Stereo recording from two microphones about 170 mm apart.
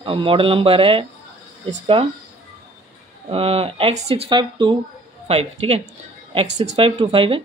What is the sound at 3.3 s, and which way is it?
A man's voice, 35° right (ahead or behind).